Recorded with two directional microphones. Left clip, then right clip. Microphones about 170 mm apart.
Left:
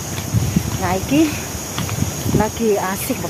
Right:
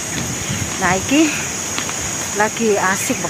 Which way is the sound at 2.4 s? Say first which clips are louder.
Right 2 dB; 10° right (ahead or behind).